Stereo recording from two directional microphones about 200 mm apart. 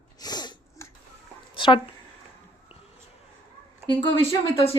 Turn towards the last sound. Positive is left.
turn(degrees=25)  # may be behind; listen again after turning